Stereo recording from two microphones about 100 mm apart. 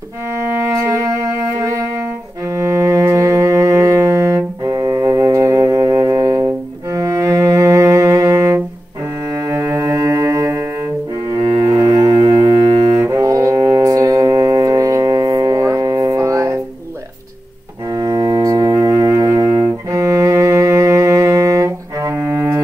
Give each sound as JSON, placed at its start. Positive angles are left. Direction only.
{"t": 0.3, "sound": "music", "side_deg": -25}
{"t": 6.9, "sound": "cello", "side_deg": -30}
{"t": 13.0, "sound": "music", "side_deg": -35}
{"t": 17.8, "sound": "cello", "side_deg": -40}